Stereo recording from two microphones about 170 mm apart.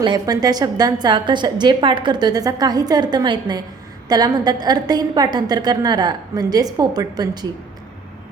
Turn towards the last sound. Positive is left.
turn(degrees=-25)  # may be behind; listen again after turning